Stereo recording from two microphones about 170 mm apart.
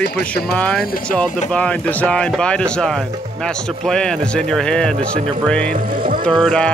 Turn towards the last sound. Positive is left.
turn(degrees=5)  # may be behind; listen again after turning